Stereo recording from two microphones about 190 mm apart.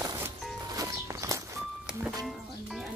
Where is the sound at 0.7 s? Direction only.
20° right (ahead or behind).